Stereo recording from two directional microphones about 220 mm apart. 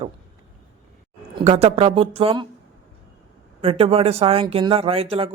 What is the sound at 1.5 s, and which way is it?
Speech, 30° right (ahead or behind).